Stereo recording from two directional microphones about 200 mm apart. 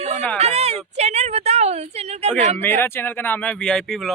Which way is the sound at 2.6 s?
10° left (ahead or behind).